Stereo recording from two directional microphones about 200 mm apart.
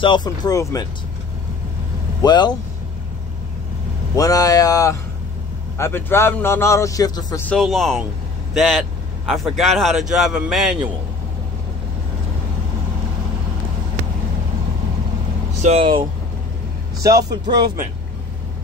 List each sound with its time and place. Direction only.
0.0 s speech: 20° left (ahead or behind)
2.2 s speech: 20° left (ahead or behind)
4.1 s a man's voice: 15° left (ahead or behind)
7.4 s speech: centre (ahead or behind)
15.6 s speech: 30° right (ahead or behind)
17.0 s speech: 15° right (ahead or behind)